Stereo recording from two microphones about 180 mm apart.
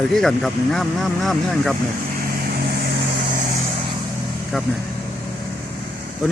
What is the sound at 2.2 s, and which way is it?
Vehicle, 55° right (ahead or behind).